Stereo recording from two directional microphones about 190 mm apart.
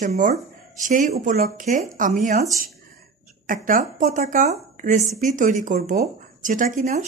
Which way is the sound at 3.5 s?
45° right (ahead or behind).